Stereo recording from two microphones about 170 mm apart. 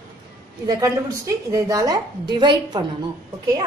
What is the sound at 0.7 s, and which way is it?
A woman's voice, 20° right (ahead or behind).